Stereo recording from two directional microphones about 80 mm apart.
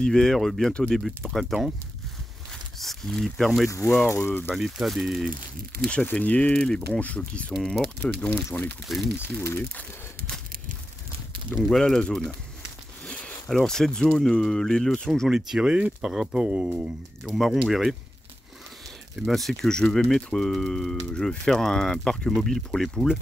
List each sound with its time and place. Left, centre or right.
0.0 s speech: centre
2.8 s speech: centre
4.1 s speech: left
4.6 s speech: centre
6.0 s speech: centre
7.5 s speech: centre
8.0 s speech: centre
8.9 s speech: centre
11.6 s speech: centre
15.2 s speech: centre
17.2 s speech: centre
19.1 s speech: centre